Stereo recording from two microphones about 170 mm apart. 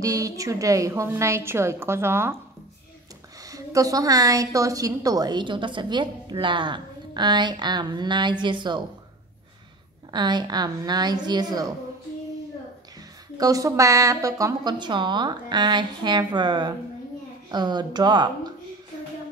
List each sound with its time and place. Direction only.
0.0 s a woman's voice: 20° right (ahead or behind)
3.4 s a woman's voice: 20° right (ahead or behind)
10.1 s a woman's voice: 25° right (ahead or behind)
13.4 s a woman's voice: 20° right (ahead or behind)